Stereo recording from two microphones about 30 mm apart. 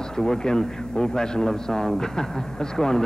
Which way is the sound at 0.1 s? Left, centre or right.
Left.